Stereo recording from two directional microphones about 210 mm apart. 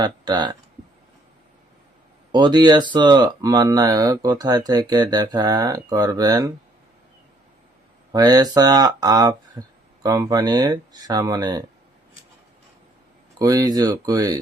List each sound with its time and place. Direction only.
0.0 s speech: 20° right (ahead or behind)
2.3 s speech: 20° right (ahead or behind)
8.1 s speech: 20° right (ahead or behind)
13.4 s speech: 15° right (ahead or behind)